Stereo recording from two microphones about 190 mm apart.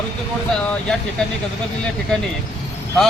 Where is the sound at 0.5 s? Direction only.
5° left (ahead or behind).